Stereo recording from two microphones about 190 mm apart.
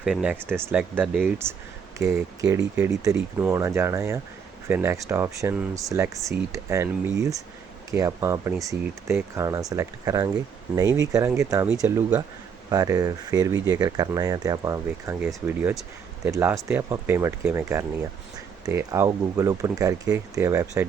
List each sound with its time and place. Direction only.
0.0 s speech: 5° right (ahead or behind)